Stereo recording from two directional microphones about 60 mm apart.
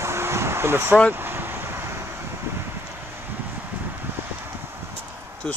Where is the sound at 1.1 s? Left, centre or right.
Right.